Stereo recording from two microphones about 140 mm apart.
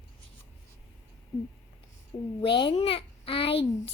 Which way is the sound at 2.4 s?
35° left (ahead or behind).